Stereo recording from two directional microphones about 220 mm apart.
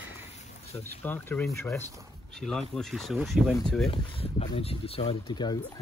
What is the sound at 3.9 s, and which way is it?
Speech, 25° left (ahead or behind).